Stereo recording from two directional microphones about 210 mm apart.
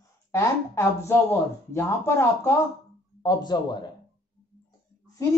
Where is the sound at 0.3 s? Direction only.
10° left (ahead or behind).